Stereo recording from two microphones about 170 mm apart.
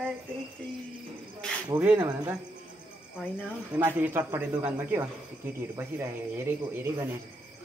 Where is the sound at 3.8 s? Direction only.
10° right (ahead or behind).